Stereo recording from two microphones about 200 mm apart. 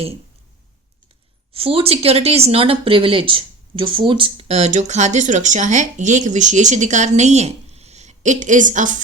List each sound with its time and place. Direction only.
1.5 s speech: 30° right (ahead or behind)